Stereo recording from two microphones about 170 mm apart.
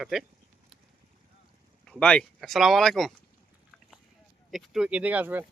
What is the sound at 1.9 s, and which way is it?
Speech, 5° left (ahead or behind).